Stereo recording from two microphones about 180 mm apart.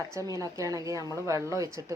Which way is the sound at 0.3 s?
20° right (ahead or behind).